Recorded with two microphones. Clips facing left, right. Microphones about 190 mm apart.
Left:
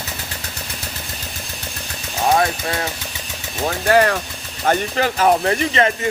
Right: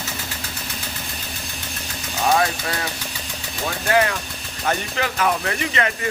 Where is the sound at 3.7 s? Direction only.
45° left (ahead or behind).